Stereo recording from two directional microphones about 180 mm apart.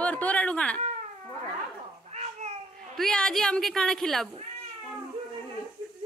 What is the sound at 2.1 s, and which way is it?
Cat, 40° right (ahead or behind).